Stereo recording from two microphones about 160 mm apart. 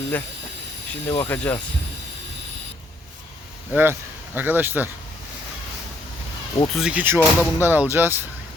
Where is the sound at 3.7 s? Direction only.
10° right (ahead or behind).